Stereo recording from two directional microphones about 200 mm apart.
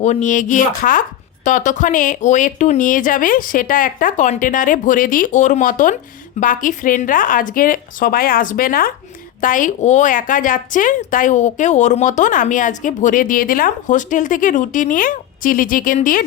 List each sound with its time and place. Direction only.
0.0 s a woman's voice: 35° left (ahead or behind)